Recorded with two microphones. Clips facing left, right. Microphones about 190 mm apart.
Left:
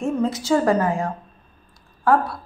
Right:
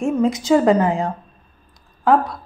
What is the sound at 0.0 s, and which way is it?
A woman's voice, 15° right (ahead or behind).